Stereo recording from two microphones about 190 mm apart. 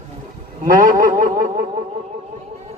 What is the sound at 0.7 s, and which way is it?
Speech, 45° right (ahead or behind).